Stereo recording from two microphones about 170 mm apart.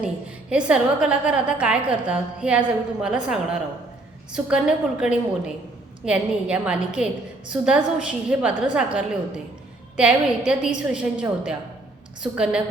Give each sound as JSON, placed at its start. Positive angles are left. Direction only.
{"t": 0.5, "sound": "a woman's voice", "side_deg": -5}